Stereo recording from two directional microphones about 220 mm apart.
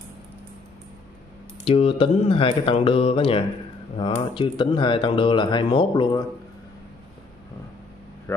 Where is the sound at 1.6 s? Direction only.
25° left (ahead or behind).